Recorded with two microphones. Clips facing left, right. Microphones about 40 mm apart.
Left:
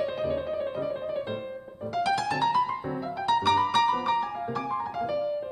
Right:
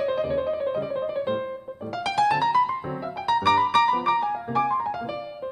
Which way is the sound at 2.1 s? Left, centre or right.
Centre.